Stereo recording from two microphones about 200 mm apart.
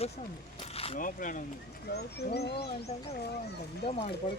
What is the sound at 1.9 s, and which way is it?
Speech, 55° left (ahead or behind).